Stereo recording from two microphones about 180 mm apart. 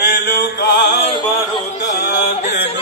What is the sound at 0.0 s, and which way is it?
Chant, 65° left (ahead or behind).